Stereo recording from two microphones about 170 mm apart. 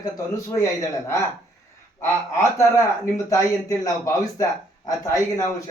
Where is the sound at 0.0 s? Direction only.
20° left (ahead or behind).